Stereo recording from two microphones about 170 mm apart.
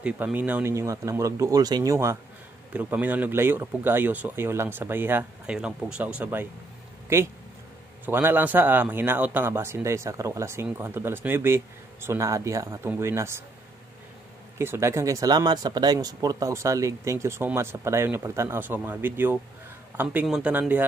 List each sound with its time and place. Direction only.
0.0 s a man's voice: 10° right (ahead or behind)
8.0 s a man's voice: 10° right (ahead or behind)
14.6 s a man's voice: 15° right (ahead or behind)